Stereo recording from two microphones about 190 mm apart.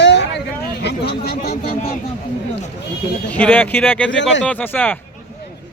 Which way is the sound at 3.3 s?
10° left (ahead or behind).